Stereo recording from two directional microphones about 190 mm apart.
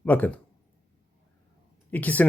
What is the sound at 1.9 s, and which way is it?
Speech, 10° left (ahead or behind).